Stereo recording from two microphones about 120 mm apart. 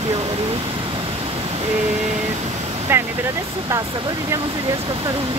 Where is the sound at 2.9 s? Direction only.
20° right (ahead or behind).